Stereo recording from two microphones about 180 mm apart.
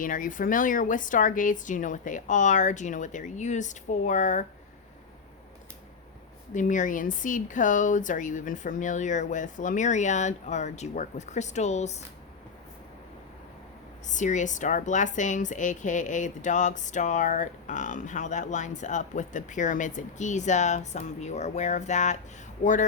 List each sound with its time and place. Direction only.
0.0 s speech: 50° left (ahead or behind)
6.5 s speech: 45° left (ahead or behind)
14.1 s speech: 45° left (ahead or behind)